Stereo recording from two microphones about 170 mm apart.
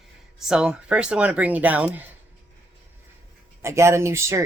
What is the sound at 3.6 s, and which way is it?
Speech, 15° right (ahead or behind).